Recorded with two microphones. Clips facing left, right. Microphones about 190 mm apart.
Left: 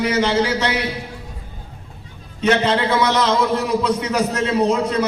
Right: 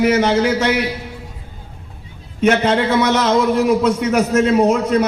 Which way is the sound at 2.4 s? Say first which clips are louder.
Right 3 dB; 50° right (ahead or behind).